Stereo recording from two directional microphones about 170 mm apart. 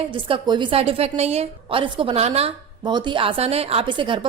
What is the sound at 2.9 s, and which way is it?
A woman's voice, 25° right (ahead or behind).